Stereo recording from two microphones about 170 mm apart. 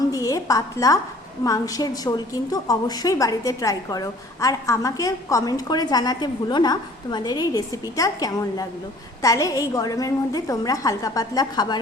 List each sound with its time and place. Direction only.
0.1 s a woman's voice: 20° left (ahead or behind)